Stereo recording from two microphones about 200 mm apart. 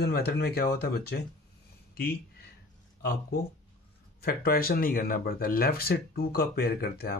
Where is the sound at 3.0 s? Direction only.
50° left (ahead or behind).